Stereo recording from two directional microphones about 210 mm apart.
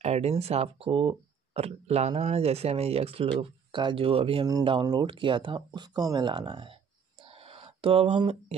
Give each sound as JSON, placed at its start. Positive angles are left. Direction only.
{"t": 0.0, "sound": "speech", "side_deg": -30}